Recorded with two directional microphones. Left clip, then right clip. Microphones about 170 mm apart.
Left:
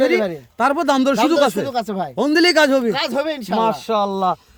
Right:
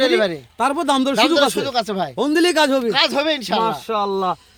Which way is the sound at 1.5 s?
10° right (ahead or behind).